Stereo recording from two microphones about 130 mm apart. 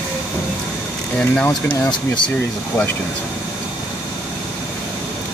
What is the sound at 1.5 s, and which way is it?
Speech, 30° left (ahead or behind).